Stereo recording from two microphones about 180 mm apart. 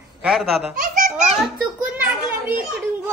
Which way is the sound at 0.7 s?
45° right (ahead or behind).